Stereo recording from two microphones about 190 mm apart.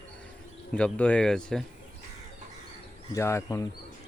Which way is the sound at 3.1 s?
15° left (ahead or behind).